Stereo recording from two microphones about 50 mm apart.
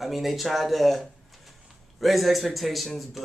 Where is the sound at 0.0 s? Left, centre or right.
Centre.